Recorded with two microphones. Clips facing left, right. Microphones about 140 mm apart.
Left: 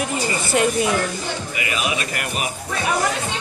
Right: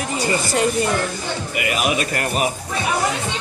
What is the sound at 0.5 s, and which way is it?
Speech, 5° left (ahead or behind).